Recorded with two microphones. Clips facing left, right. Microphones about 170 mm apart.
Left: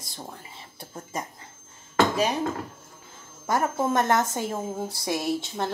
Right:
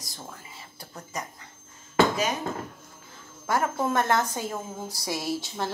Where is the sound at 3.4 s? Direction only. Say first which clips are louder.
Left 1 dB; 20° left (ahead or behind).